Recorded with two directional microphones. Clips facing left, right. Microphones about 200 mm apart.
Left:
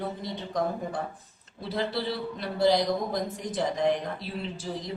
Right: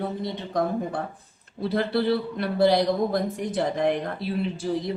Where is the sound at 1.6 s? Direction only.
55° right (ahead or behind).